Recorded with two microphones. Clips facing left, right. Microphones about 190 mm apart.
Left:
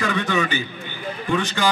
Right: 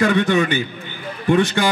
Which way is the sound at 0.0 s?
50° right (ahead or behind).